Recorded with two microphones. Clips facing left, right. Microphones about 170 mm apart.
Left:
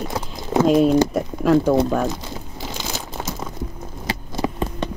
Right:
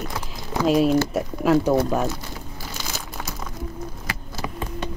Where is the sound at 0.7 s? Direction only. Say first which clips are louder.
Left 2 dB; 5° right (ahead or behind).